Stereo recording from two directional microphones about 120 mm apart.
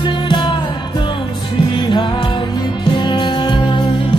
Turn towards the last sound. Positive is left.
turn(degrees=40)  # may be behind; listen again after turning